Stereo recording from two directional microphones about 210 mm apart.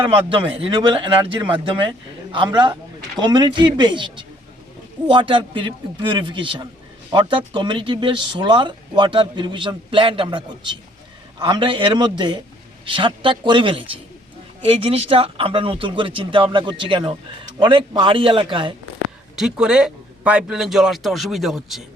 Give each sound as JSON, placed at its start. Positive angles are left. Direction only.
{"t": 0.0, "sound": "speech", "side_deg": -25}
{"t": 19.4, "sound": "speech", "side_deg": -5}